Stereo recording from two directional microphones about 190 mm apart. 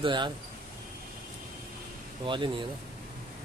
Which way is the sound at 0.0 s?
25° right (ahead or behind).